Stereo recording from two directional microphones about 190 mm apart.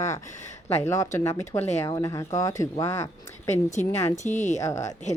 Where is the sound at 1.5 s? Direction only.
35° left (ahead or behind).